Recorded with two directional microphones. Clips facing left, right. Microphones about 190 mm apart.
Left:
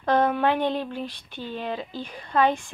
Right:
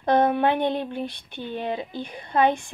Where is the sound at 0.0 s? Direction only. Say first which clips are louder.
Right 2 dB; 15° right (ahead or behind).